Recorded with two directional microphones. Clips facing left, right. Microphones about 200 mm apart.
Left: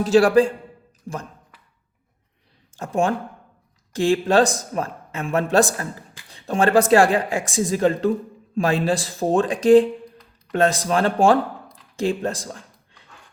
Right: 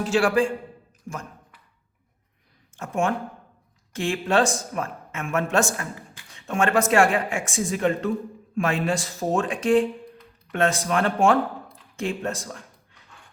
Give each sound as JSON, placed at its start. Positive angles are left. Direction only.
{"t": 0.0, "sound": "speech", "side_deg": 35}
{"t": 2.7, "sound": "speech", "side_deg": 35}